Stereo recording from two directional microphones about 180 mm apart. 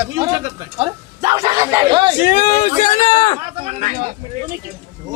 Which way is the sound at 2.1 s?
45° left (ahead or behind).